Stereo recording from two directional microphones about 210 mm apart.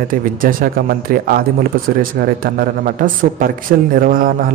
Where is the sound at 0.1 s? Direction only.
40° right (ahead or behind).